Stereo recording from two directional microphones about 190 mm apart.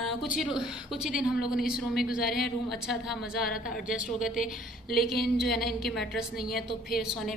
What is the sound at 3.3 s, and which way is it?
Speech, 50° left (ahead or behind).